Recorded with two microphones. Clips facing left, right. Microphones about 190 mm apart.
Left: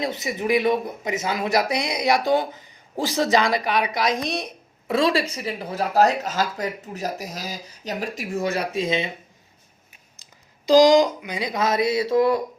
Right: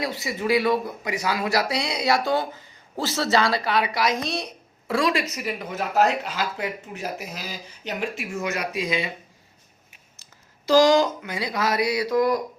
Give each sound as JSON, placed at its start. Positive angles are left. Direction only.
{"t": 0.0, "sound": "speech", "side_deg": 20}
{"t": 10.7, "sound": "speech", "side_deg": 15}